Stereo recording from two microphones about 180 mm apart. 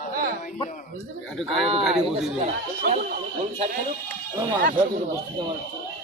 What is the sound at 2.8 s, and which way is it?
Speech, 55° right (ahead or behind).